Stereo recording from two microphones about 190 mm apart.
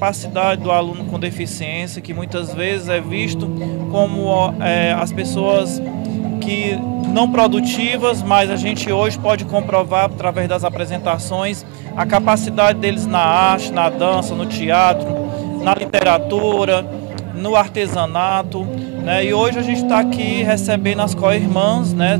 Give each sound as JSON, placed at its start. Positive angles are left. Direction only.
{"t": 0.0, "sound": "speech", "side_deg": -15}
{"t": 2.6, "sound": "speech", "side_deg": -10}
{"t": 4.4, "sound": "speech", "side_deg": -10}
{"t": 16.3, "sound": "speech", "side_deg": -40}
{"t": 17.5, "sound": "speech", "side_deg": -15}